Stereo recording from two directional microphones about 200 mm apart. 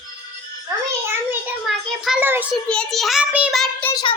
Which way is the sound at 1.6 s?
Centre (ahead or behind).